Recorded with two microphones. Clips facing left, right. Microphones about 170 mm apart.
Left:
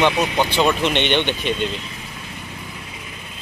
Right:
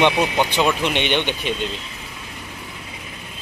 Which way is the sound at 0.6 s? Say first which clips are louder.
Left 3 dB; 5° right (ahead or behind).